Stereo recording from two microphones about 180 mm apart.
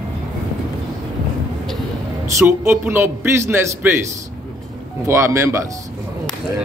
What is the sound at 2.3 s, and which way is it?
A man's voice, 15° right (ahead or behind).